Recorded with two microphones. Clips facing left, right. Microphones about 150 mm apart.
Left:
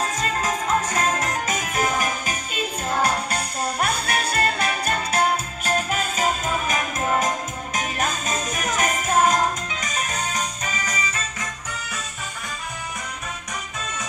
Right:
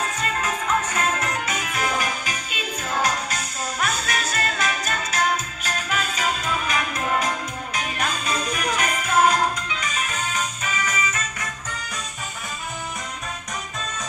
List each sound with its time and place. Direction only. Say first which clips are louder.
0.0 s music: left 2 dB; 40° left (ahead or behind)